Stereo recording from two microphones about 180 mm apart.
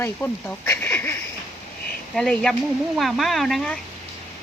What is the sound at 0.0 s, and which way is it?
Speech, 10° left (ahead or behind).